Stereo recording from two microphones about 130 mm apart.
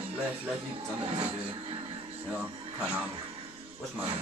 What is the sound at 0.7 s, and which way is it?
Music, 45° right (ahead or behind).